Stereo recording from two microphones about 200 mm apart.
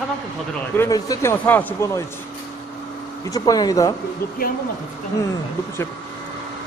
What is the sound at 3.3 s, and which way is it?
Speech, 20° left (ahead or behind).